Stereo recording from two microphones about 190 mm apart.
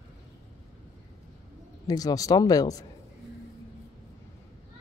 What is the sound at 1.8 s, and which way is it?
Speech, 20° left (ahead or behind).